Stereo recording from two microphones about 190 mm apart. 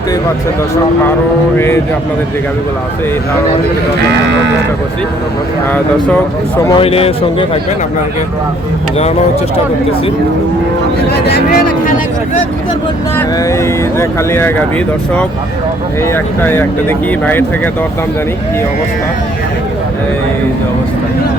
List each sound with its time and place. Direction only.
1.5 s speech: 10° left (ahead or behind)
6.7 s speech: 30° left (ahead or behind)
11.3 s speech: 50° left (ahead or behind)
13.1 s speech: 15° left (ahead or behind)
16.1 s speech: 10° left (ahead or behind)